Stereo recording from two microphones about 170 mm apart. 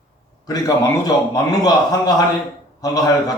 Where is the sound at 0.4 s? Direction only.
20° left (ahead or behind).